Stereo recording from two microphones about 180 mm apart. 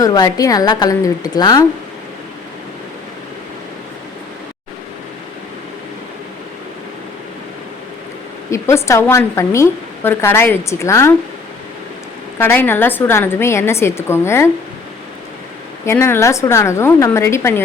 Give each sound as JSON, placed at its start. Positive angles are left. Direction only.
{"t": 0.0, "sound": "a woman's voice", "side_deg": 20}
{"t": 8.4, "sound": "a woman's voice", "side_deg": 15}
{"t": 12.4, "sound": "a woman's voice", "side_deg": 10}
{"t": 15.9, "sound": "a woman's voice", "side_deg": 15}